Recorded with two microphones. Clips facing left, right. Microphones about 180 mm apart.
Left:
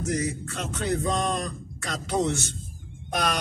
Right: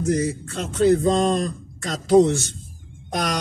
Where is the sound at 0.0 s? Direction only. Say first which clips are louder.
Right 6 dB; 35° right (ahead or behind).